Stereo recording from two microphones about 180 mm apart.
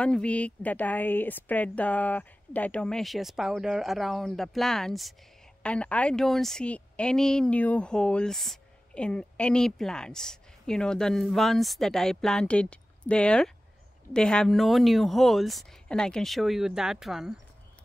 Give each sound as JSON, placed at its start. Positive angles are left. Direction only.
{"t": 0.0, "sound": "a woman's voice", "side_deg": 5}